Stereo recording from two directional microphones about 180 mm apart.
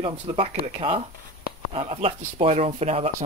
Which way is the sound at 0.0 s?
30° right (ahead or behind).